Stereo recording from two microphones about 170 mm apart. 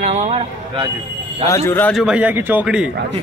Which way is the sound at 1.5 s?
15° left (ahead or behind).